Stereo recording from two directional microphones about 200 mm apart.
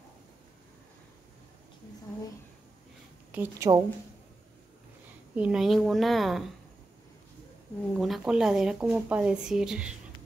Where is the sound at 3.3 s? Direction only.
15° right (ahead or behind).